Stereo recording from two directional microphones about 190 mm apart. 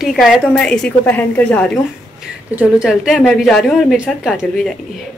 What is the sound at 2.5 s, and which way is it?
A woman's voice, 5° right (ahead or behind).